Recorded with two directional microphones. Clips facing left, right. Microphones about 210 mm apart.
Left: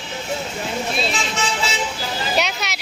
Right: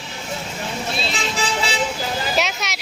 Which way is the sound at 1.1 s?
35° right (ahead or behind).